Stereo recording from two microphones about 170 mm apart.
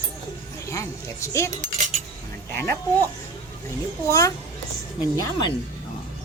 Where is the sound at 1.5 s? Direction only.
45° right (ahead or behind).